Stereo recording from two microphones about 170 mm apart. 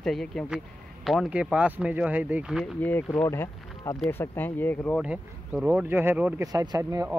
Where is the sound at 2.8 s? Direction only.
10° left (ahead or behind).